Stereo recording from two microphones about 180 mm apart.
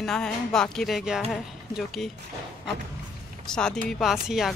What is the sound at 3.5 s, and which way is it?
Speech, 5° left (ahead or behind).